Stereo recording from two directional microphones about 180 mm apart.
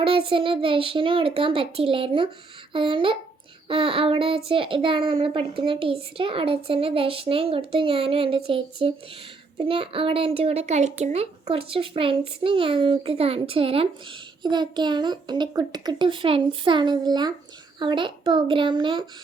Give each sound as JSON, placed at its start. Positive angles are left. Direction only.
{"t": 0.3, "sound": "a child's voice", "side_deg": -30}